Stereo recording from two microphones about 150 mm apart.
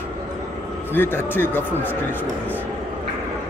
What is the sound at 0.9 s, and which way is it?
Speech, 15° left (ahead or behind).